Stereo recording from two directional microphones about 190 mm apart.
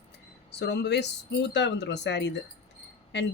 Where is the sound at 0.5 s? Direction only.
65° left (ahead or behind).